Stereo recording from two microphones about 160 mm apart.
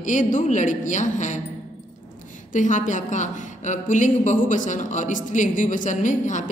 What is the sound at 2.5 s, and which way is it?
Speech, 55° left (ahead or behind).